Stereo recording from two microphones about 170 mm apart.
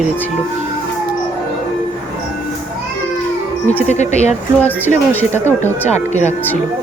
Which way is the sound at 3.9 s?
40° left (ahead or behind).